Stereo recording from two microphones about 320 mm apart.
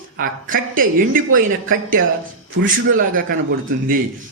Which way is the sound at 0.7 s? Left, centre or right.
Right.